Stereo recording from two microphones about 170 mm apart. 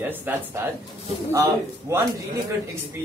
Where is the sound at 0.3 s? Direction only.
10° right (ahead or behind).